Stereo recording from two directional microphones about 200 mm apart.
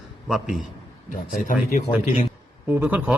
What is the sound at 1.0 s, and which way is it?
Speech, 40° left (ahead or behind).